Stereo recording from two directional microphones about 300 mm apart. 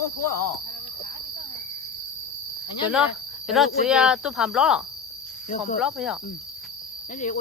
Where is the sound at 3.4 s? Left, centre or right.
Centre.